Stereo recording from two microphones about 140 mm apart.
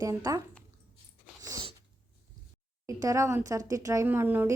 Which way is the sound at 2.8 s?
25° right (ahead or behind).